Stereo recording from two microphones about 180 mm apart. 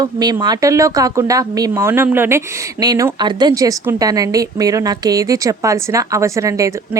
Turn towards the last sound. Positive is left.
turn(degrees=-15)  # may be behind; listen again after turning